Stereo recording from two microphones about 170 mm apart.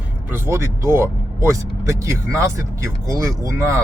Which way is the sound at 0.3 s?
15° right (ahead or behind).